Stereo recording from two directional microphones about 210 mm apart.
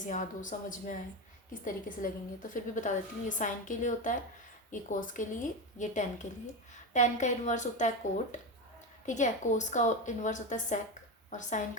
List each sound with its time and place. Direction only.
0.0 s a woman's voice: 40° left (ahead or behind)